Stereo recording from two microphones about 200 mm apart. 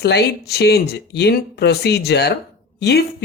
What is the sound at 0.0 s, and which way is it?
Speech, 55° left (ahead or behind).